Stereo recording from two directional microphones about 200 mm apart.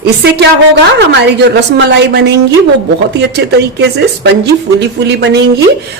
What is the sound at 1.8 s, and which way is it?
Speech, 55° right (ahead or behind).